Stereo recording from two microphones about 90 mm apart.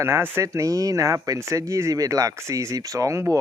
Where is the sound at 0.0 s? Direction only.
30° right (ahead or behind).